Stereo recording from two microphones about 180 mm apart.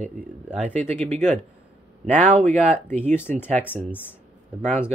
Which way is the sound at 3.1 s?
10° left (ahead or behind).